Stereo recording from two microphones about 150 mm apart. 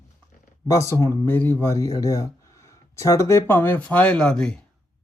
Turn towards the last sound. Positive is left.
turn(degrees=5)  # may be behind; listen again after turning